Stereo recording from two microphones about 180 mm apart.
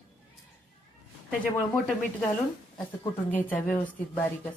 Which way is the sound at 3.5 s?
10° left (ahead or behind).